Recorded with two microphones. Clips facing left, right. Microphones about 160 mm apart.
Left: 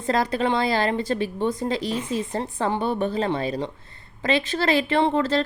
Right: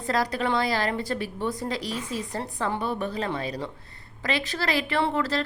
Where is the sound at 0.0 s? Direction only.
25° left (ahead or behind).